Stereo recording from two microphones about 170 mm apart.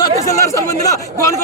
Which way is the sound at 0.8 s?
20° left (ahead or behind).